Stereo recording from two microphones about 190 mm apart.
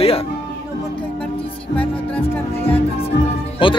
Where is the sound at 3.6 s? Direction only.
25° left (ahead or behind).